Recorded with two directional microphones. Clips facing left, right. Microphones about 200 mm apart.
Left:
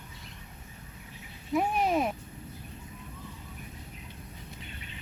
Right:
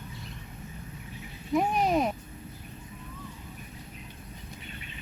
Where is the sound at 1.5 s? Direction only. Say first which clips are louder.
Right 2 dB; 5° left (ahead or behind).